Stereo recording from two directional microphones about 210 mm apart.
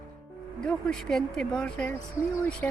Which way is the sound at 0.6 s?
5° left (ahead or behind).